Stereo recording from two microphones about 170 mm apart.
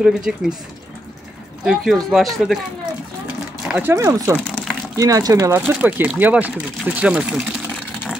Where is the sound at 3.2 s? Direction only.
10° right (ahead or behind).